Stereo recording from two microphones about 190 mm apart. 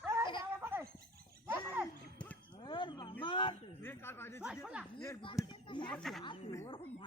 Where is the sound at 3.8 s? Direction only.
10° left (ahead or behind).